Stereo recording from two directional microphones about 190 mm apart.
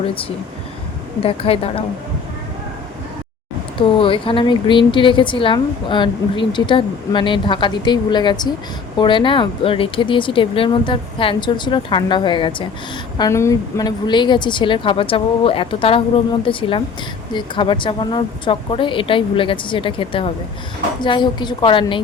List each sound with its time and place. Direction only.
0.0 s a woman's voice: 30° left (ahead or behind)
3.8 s speech: 25° left (ahead or behind)